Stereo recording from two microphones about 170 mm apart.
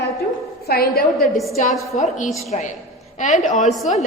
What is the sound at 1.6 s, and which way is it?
A woman's voice, 50° left (ahead or behind).